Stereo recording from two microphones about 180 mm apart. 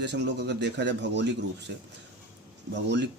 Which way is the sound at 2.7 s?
75° right (ahead or behind).